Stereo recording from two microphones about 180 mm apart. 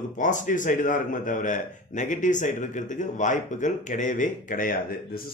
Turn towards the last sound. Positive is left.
turn(degrees=50)  # may be behind; listen again after turning